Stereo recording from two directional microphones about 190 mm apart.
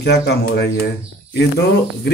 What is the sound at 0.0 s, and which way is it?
Speech, 60° left (ahead or behind).